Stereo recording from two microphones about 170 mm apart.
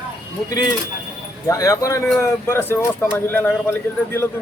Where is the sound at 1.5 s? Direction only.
20° left (ahead or behind).